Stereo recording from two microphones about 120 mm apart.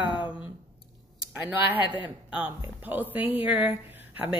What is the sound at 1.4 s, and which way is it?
Speech, 15° right (ahead or behind).